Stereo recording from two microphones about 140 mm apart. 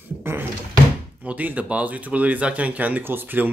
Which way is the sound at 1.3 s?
10° right (ahead or behind).